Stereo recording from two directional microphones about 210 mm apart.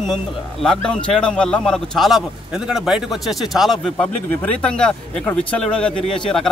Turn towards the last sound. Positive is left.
turn(degrees=5)  # may be behind; listen again after turning